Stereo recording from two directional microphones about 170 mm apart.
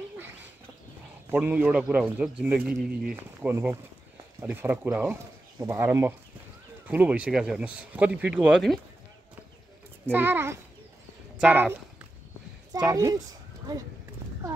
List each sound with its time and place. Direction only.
1.3 s a man's voice: 10° right (ahead or behind)
10.1 s a man's voice: 10° right (ahead or behind)
11.3 s a sound: 10° right (ahead or behind)
12.7 s a woman's voice: 20° right (ahead or behind)